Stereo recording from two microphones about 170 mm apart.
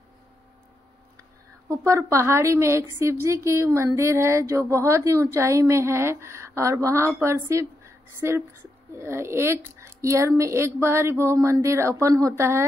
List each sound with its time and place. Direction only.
1.7 s a woman's voice: 20° right (ahead or behind)